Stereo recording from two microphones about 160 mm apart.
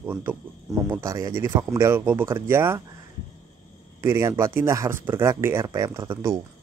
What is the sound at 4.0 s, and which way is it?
Speech, 15° right (ahead or behind).